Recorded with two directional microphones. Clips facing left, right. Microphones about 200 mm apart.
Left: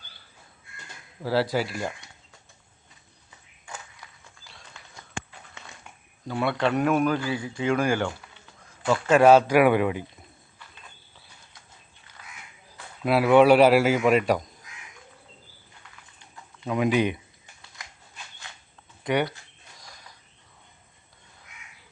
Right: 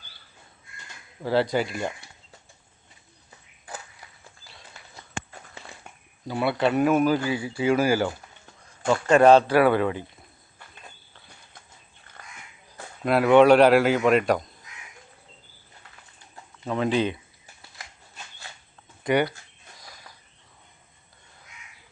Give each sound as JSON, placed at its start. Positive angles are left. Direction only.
{"t": 1.2, "sound": "speech", "side_deg": 5}
{"t": 3.2, "sound": "a sound", "side_deg": -35}
{"t": 5.3, "sound": "a sound", "side_deg": -35}
{"t": 6.2, "sound": "speech", "side_deg": -5}
{"t": 13.1, "sound": "speech", "side_deg": 5}
{"t": 16.6, "sound": "speech", "side_deg": 10}
{"t": 19.0, "sound": "speech", "side_deg": 0}